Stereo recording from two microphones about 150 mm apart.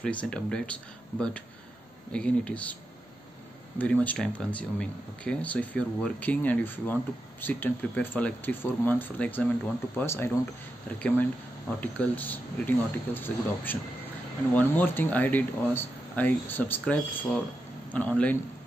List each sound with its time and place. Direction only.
0.0 s speech: 5° left (ahead or behind)
2.1 s speech: 5° left (ahead or behind)